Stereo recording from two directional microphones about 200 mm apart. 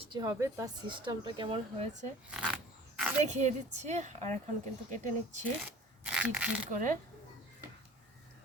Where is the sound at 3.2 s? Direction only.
35° right (ahead or behind).